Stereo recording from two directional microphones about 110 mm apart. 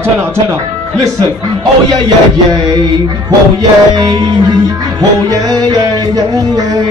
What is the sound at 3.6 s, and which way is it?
Music, 35° right (ahead or behind).